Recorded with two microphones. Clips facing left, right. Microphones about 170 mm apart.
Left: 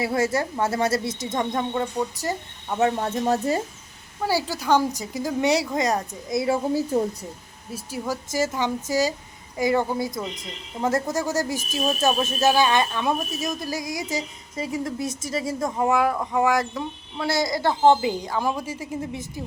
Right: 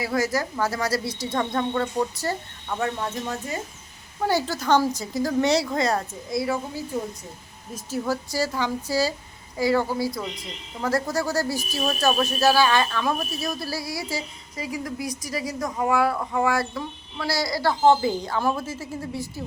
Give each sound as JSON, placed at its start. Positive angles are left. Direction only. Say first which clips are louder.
{"t": 0.0, "sound": "speech", "louder": "left 2 dB", "side_deg": 25}
{"t": 3.0, "sound": "speech", "louder": "left 6 dB", "side_deg": 40}
{"t": 4.2, "sound": "a woman's voice", "louder": "right 1 dB", "side_deg": 5}
{"t": 6.9, "sound": "speech", "louder": "left 5 dB", "side_deg": 40}
{"t": 7.7, "sound": "a woman's voice", "louder": "right 2 dB", "side_deg": 10}